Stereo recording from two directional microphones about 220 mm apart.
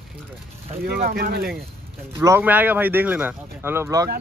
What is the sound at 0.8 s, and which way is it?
Speech, 40° right (ahead or behind).